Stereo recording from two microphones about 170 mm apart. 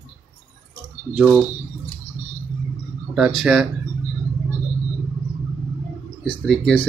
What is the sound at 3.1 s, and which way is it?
Speech, 5° right (ahead or behind).